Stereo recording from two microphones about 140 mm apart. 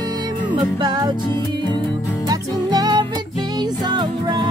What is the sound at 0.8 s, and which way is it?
Music, 30° right (ahead or behind).